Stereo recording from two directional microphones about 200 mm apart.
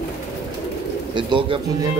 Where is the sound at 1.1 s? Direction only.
25° right (ahead or behind).